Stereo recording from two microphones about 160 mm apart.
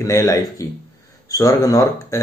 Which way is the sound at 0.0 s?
20° left (ahead or behind).